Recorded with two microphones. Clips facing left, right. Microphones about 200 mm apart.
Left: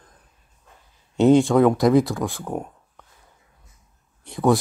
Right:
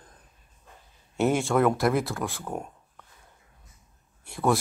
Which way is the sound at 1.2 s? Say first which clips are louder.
Left 8 dB; 15° left (ahead or behind).